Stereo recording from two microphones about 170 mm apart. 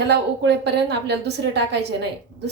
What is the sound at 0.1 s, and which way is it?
A woman's voice, 80° right.